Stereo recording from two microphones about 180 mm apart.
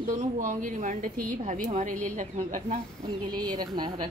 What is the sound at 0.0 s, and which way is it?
A woman's voice, 45° right (ahead or behind).